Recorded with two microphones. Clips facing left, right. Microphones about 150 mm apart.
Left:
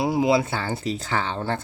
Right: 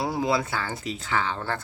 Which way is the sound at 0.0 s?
15° left (ahead or behind).